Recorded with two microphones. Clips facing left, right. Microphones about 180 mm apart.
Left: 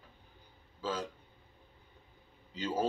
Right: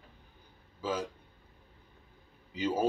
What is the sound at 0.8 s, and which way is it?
Speech, 10° right (ahead or behind).